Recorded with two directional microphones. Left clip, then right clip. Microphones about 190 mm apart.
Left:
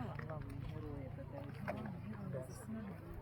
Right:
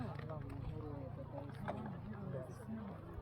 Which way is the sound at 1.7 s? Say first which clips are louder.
Left 1 dB; 35° left (ahead or behind).